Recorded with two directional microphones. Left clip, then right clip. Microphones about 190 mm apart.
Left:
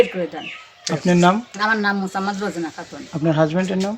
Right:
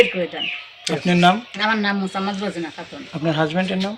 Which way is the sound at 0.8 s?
50° left (ahead or behind).